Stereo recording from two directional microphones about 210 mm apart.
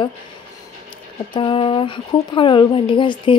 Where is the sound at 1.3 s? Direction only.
25° left (ahead or behind).